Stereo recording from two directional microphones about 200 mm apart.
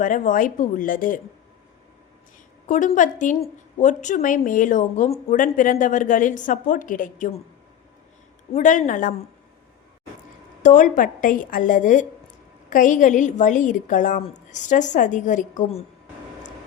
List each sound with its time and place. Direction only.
0.0 s a woman's voice: 40° left (ahead or behind)
2.6 s a woman's voice: 40° left (ahead or behind)
8.5 s a woman's voice: 35° left (ahead or behind)
10.6 s a woman's voice: 40° left (ahead or behind)